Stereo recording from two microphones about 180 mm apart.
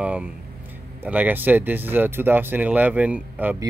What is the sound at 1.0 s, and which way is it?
Speech, 10° right (ahead or behind).